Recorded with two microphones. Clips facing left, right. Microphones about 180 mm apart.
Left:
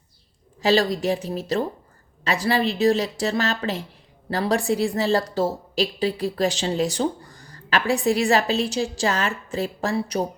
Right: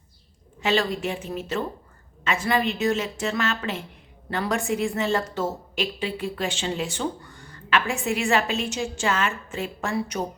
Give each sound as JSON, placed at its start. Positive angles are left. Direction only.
{"t": 0.6, "sound": "a woman's voice", "side_deg": 35}